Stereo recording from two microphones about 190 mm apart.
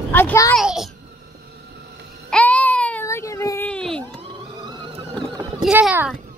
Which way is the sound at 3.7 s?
5° left (ahead or behind).